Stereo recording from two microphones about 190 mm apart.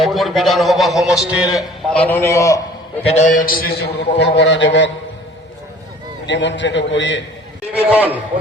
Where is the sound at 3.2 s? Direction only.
40° left (ahead or behind); by 4.9 s 70° left (ahead or behind).